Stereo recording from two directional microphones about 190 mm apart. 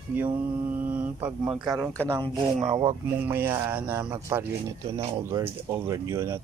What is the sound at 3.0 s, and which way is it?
Speech, 10° right (ahead or behind).